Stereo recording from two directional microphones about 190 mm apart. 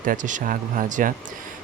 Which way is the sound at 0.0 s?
45° right (ahead or behind).